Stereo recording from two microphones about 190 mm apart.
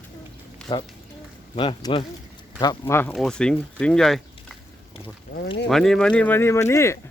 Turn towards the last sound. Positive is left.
turn(degrees=15)  # may be behind; listen again after turning